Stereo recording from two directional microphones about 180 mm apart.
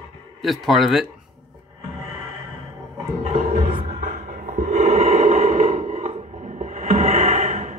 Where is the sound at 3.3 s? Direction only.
45° right (ahead or behind).